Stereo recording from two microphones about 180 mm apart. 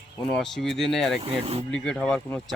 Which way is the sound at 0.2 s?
Centre (ahead or behind).